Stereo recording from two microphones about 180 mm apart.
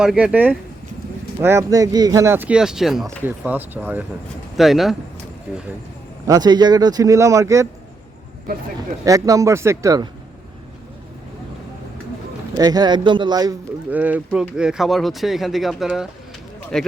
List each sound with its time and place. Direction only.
0.0 s speech: 5° right (ahead or behind)
6.2 s speech: 20° right (ahead or behind)
9.0 s speech: 20° right (ahead or behind)
12.5 s speech: 20° right (ahead or behind)
13.9 s speech: 10° right (ahead or behind)